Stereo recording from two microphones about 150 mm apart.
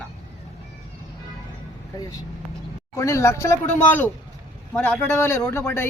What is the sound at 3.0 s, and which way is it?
Speech, 20° left (ahead or behind).